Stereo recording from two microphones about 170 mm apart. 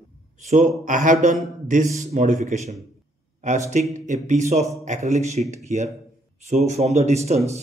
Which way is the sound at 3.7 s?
45° right (ahead or behind).